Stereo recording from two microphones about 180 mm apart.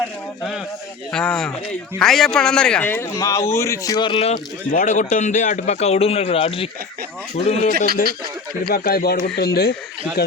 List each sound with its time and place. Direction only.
1.1 s a man's voice: 5° left (ahead or behind); by 4.4 s 30° left (ahead or behind)
4.7 s a man's voice: 50° left (ahead or behind)
8.6 s speech: 55° left (ahead or behind)